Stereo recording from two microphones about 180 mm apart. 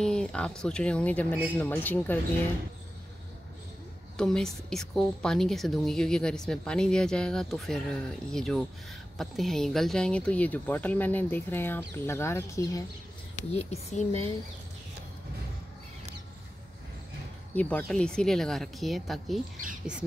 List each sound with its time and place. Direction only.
0.0 s a woman's voice: 5° left (ahead or behind)
4.2 s a woman's voice: 5° left (ahead or behind)
13.5 s speech: 35° left (ahead or behind)
17.6 s a woman's voice: 10° left (ahead or behind)